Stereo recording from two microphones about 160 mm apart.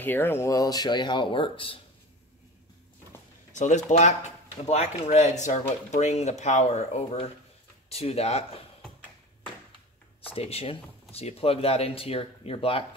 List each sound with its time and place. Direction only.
0.0 s speech: 15° left (ahead or behind); by 1.8 s 30° left (ahead or behind)
3.5 s speech: 50° left (ahead or behind)
10.3 s speech: 40° left (ahead or behind)